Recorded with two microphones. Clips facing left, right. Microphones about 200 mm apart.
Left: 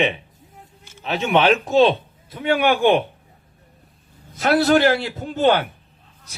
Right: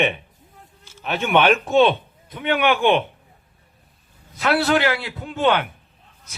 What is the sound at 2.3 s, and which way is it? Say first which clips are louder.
Speech: left 1 dB; 35° left (ahead or behind).